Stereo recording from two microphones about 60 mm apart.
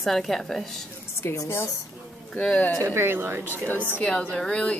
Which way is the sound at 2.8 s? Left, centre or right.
Right.